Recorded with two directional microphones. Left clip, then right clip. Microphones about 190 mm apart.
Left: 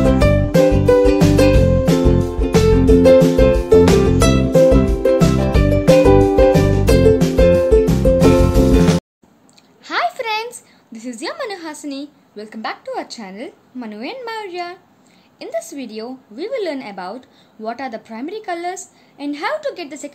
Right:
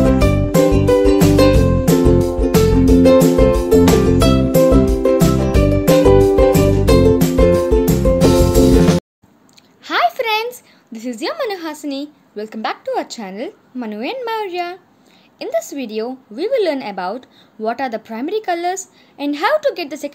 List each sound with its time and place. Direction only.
0.0 s music: centre (ahead or behind)
9.8 s a sound: 15° right (ahead or behind)
15.3 s a woman's voice: 20° right (ahead or behind)